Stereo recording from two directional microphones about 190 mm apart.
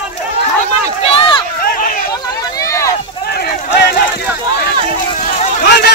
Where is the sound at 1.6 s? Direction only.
45° left (ahead or behind).